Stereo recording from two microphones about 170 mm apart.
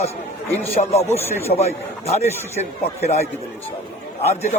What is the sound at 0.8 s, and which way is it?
A man's voice, 35° left (ahead or behind).